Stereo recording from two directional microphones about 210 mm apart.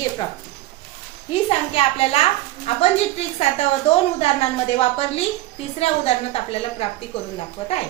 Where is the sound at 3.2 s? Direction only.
30° left (ahead or behind).